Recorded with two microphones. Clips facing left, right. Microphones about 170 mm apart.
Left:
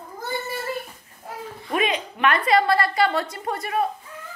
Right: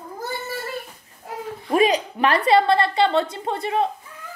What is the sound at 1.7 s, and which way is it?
A child's voice, 35° right (ahead or behind).